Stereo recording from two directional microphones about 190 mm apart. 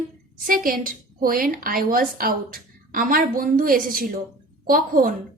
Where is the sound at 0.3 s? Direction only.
50° right (ahead or behind).